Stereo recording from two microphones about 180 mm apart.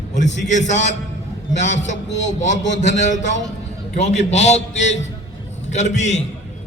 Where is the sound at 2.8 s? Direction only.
40° left (ahead or behind).